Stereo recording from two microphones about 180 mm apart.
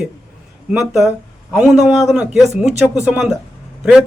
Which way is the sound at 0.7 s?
Centre (ahead or behind).